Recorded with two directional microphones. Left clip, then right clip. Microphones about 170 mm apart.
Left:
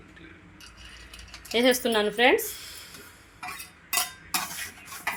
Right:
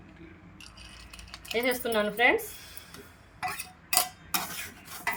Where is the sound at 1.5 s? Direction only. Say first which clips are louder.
Left 5 dB; 55° left (ahead or behind).